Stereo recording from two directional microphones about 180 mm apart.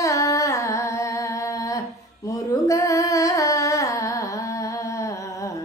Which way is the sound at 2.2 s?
20° left (ahead or behind).